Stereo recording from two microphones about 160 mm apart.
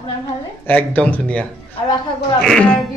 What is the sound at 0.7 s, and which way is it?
Speech, 10° left (ahead or behind).